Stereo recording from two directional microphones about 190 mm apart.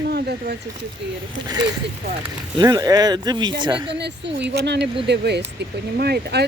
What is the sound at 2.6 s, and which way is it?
Speech, 20° right (ahead or behind).